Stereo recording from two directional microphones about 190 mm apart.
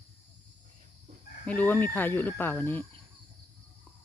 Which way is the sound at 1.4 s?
10° left (ahead or behind).